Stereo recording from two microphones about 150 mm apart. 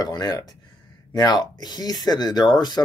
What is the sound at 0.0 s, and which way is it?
Speech, 30° left (ahead or behind).